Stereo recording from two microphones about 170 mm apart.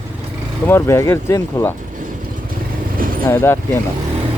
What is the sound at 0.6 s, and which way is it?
Speech, 15° left (ahead or behind).